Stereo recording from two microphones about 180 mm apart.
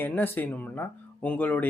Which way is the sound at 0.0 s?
10° left (ahead or behind).